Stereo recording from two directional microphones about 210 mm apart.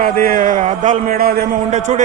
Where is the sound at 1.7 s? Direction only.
35° right (ahead or behind).